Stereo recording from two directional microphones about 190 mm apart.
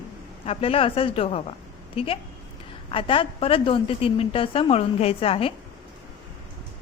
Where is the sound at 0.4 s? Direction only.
30° left (ahead or behind).